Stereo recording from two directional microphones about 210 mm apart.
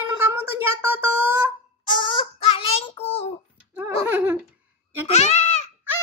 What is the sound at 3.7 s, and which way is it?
Speech, 10° right (ahead or behind).